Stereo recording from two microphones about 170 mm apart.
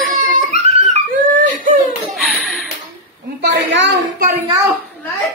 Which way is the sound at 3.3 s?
90° right.